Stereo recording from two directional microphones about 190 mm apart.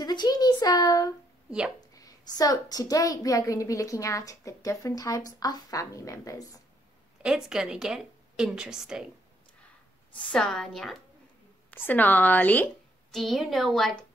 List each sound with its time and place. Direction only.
0.0 s a sound: 20° left (ahead or behind)
1.8 s a woman's voice: 20° left (ahead or behind)
7.2 s a woman's voice: 5° right (ahead or behind)
10.1 s a woman's voice: 5° left (ahead or behind)